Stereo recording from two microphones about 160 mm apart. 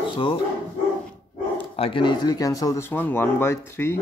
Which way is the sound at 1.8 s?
35° left (ahead or behind).